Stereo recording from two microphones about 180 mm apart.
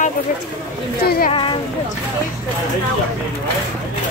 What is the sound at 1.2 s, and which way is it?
Speech, 30° left (ahead or behind).